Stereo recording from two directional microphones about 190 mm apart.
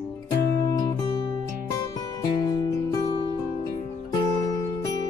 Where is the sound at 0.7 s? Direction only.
20° left (ahead or behind).